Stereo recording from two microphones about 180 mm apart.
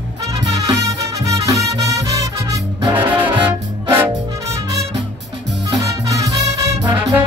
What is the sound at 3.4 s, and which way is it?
Music, 15° right (ahead or behind).